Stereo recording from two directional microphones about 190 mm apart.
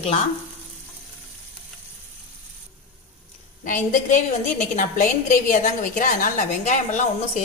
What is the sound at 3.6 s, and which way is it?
A woman's voice, 45° left (ahead or behind).